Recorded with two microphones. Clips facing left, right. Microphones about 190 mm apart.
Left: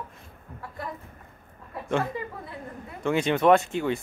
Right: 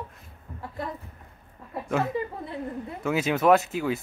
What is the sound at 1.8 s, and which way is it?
Speech, 5° right (ahead or behind).